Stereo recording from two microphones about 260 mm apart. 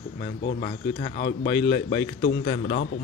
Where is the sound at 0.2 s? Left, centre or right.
Left.